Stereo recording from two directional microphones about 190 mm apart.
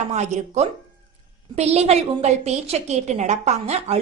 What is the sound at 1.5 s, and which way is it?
A woman's voice, 35° right (ahead or behind).